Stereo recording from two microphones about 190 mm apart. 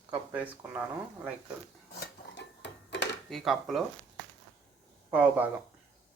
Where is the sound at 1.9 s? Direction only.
60° left (ahead or behind).